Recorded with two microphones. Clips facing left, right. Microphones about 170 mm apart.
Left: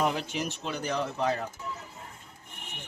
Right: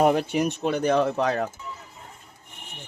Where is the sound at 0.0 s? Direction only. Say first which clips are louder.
Right 9 dB; 50° right (ahead or behind); by 1.5 s 70° right (ahead or behind).